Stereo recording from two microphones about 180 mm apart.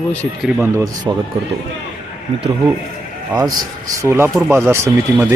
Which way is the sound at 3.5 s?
20° right (ahead or behind).